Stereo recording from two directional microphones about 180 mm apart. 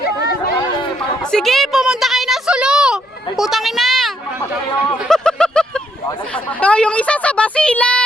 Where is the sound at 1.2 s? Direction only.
5° left (ahead or behind).